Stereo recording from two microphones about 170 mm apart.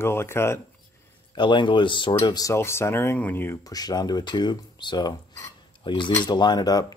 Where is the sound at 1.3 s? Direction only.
25° left (ahead or behind).